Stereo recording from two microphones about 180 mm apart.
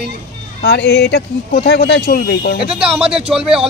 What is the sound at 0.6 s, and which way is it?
Speech, 65° left (ahead or behind).